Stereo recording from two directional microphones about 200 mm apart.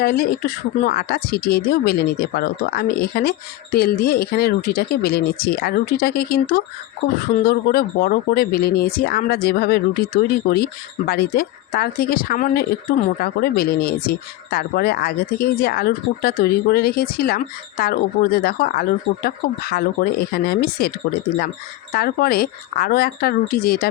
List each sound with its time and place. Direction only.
0.0 s speech: 50° left (ahead or behind)
21.9 s speech: 50° left (ahead or behind)